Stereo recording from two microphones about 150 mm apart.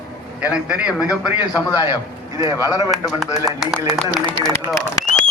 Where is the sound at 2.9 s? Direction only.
Centre (ahead or behind).